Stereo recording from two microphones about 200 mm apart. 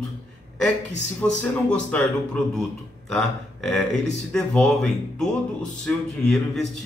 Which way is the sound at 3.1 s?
5° left (ahead or behind).